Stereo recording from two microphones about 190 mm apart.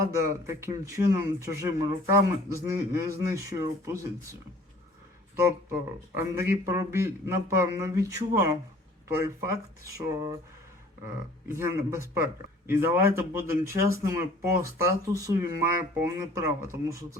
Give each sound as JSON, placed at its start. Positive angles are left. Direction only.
{"t": 0.2, "sound": "speech", "side_deg": -15}
{"t": 5.4, "sound": "speech", "side_deg": -15}